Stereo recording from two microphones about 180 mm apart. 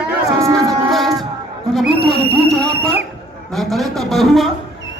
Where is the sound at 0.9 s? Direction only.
Centre (ahead or behind).